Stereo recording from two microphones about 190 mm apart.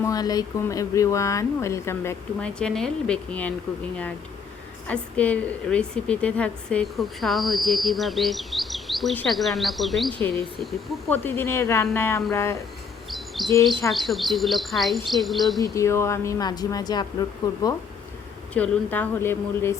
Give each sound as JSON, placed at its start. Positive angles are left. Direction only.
{"t": 0.0, "sound": "speech", "side_deg": 20}
{"t": 4.9, "sound": "a woman's voice", "side_deg": 5}
{"t": 11.2, "sound": "speech", "side_deg": 10}
{"t": 13.1, "sound": "chirp", "side_deg": 0}
{"t": 13.9, "sound": "a woman's voice", "side_deg": 0}
{"t": 15.6, "sound": "speech", "side_deg": 15}
{"t": 18.5, "sound": "speech", "side_deg": 10}